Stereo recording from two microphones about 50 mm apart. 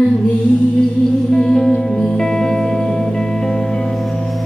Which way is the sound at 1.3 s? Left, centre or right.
Centre.